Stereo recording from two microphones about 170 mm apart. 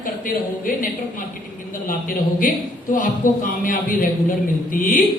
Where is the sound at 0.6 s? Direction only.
55° left (ahead or behind).